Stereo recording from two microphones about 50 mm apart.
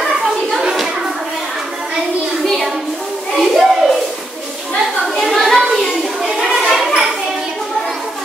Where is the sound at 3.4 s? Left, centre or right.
Centre.